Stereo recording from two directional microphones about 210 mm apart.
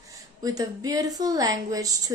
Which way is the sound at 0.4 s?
15° right (ahead or behind).